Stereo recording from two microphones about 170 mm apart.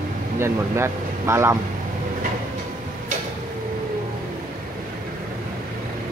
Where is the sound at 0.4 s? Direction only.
15° right (ahead or behind).